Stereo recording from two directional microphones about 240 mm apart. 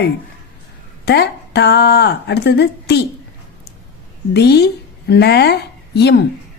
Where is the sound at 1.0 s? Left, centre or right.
Left.